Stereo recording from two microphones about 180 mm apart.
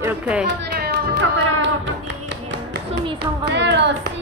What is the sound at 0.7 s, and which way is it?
Cat, 60° right (ahead or behind).